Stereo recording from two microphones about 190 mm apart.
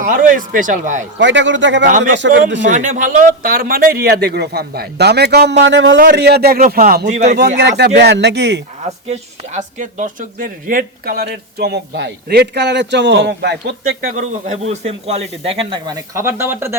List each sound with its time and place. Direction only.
0.0 s speech: 45° right (ahead or behind)
1.2 s a man's voice: 70° right (ahead or behind)
1.9 s speech: 45° right (ahead or behind)
7.3 s speech: 60° right (ahead or behind)
9.0 s speech: 40° right (ahead or behind); by 14.1 s 60° right (ahead or behind)
14.1 s speech: 40° right (ahead or behind); by 16.7 s 10° right (ahead or behind)